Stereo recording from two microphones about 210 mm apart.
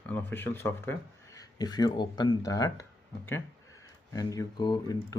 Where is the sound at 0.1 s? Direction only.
10° left (ahead or behind).